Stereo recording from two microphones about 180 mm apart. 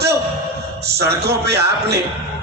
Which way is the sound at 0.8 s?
65° right (ahead or behind).